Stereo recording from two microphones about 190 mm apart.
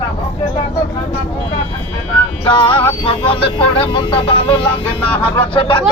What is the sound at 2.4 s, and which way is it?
Speech, 25° left (ahead or behind).